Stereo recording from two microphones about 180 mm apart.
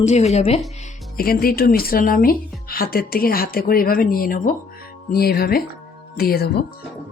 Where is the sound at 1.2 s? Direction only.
55° left (ahead or behind).